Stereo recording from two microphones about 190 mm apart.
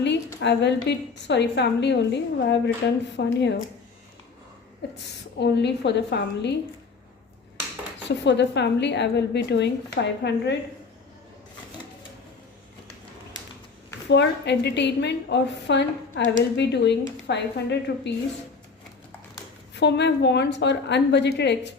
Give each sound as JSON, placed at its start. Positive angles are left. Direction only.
{"t": 0.3, "sound": "a woman's voice", "side_deg": 65}
{"t": 4.8, "sound": "a woman's voice", "side_deg": 60}
{"t": 8.0, "sound": "a woman's voice", "side_deg": 65}
{"t": 14.1, "sound": "a woman's voice", "side_deg": 65}
{"t": 19.7, "sound": "a woman's voice", "side_deg": 65}